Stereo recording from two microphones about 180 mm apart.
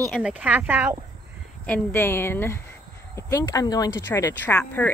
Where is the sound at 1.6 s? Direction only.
10° left (ahead or behind).